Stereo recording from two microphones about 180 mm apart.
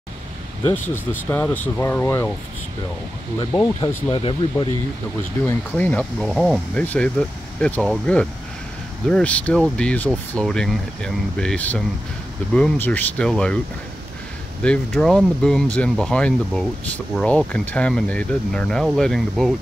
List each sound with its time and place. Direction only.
0.7 s speech: 10° left (ahead or behind)
3.6 s speech: 25° left (ahead or behind)
5.4 s speech: 10° left (ahead or behind)
14.6 s speech: 5° left (ahead or behind)